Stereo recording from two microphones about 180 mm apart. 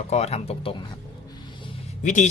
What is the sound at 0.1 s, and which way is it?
Speech, 35° left (ahead or behind).